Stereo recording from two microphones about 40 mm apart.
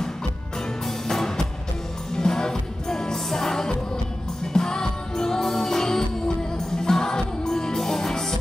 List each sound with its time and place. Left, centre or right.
0.8 s music: centre